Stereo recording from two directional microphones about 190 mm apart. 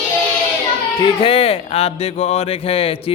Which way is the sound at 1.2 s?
30° left (ahead or behind).